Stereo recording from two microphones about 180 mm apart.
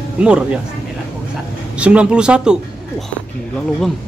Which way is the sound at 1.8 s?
5° right (ahead or behind).